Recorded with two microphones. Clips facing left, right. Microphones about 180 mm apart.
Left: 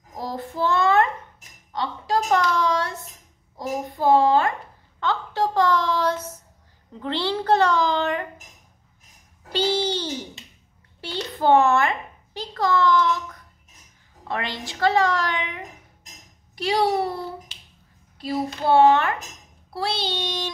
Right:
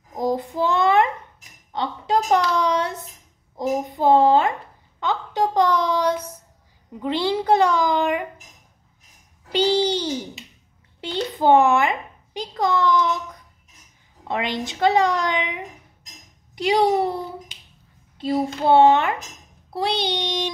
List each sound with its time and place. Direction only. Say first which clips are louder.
0.1 s child singing: right 7 dB; 15° right (ahead or behind)
1.7 s a sound: right 2 dB; 20° right (ahead or behind)
6.9 s a woman's voice: right 3 dB; 15° right (ahead or behind)
9.5 s babbling: right 4 dB; 15° right (ahead or behind)
11.0 s a sound: right 3 dB; 15° right (ahead or behind)
14.2 s a woman's voice: right 4 dB; 20° right (ahead or behind)
16.5 s a sound: right 3 dB; 20° right (ahead or behind)
18.1 s a woman's voice: right 4 dB; 25° right (ahead or behind)
19.7 s child singing: right 4 dB; 15° right (ahead or behind)